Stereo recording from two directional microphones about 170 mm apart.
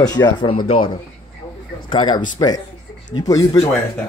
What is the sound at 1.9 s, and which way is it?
A woman's voice, 25° left (ahead or behind).